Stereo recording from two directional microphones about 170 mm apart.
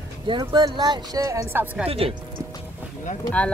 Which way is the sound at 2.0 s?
35° right (ahead or behind).